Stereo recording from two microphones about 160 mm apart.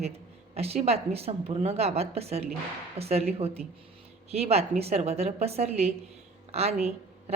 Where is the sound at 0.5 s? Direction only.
40° right (ahead or behind).